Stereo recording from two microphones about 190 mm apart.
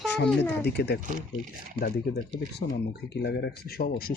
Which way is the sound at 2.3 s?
60° left (ahead or behind).